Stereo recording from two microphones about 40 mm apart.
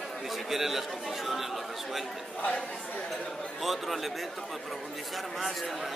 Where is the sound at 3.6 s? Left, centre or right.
Centre.